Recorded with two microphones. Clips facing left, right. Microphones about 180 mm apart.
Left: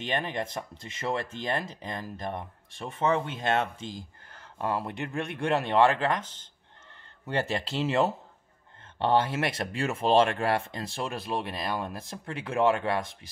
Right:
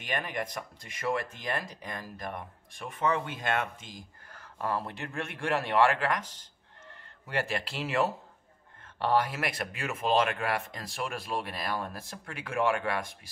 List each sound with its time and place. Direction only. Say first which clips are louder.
0.0 s speech: left 3 dB; 25° left (ahead or behind)